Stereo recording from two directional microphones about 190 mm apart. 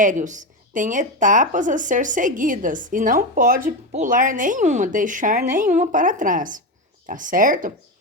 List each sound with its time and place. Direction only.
0.0 s speech: 40° right (ahead or behind)